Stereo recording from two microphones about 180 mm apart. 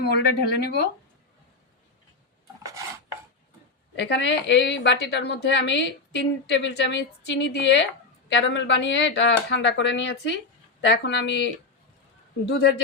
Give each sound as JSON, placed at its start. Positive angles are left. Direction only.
{"t": 0.0, "sound": "speech", "side_deg": 65}
{"t": 3.9, "sound": "a woman's voice", "side_deg": 75}
{"t": 12.5, "sound": "a woman's voice", "side_deg": 70}